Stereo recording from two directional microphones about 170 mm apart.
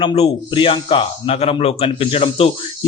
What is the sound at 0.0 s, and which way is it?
A man's voice, 30° left (ahead or behind).